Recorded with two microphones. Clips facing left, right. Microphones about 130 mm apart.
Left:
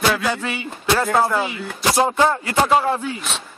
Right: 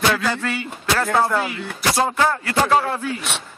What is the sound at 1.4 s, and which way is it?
Music, 15° left (ahead or behind).